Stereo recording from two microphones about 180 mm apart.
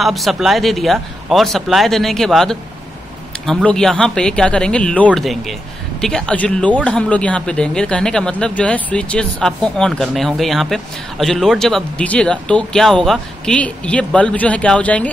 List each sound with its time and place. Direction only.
0.0 s speech: centre (ahead or behind)